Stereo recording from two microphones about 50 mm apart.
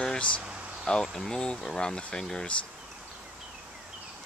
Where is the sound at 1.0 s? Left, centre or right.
Centre.